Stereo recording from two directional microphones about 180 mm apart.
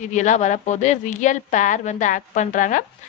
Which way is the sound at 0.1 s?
40° left (ahead or behind).